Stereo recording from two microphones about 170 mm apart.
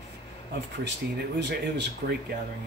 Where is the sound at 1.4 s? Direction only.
90° right.